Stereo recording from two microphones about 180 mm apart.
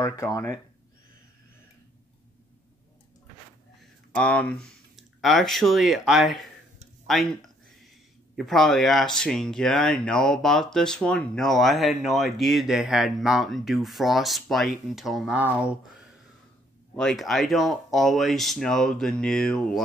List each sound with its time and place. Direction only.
0.0 s speech: 20° left (ahead or behind)
4.1 s speech: 5° left (ahead or behind)
8.4 s speech: centre (ahead or behind)
16.9 s speech: 5° left (ahead or behind)